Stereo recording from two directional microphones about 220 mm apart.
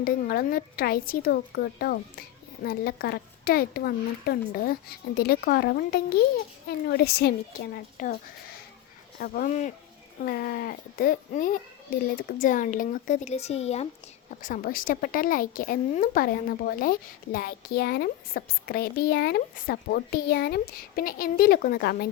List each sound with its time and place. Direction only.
0.0 s speech: 40° left (ahead or behind)